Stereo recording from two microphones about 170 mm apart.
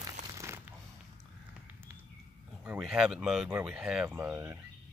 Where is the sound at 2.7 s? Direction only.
5° right (ahead or behind).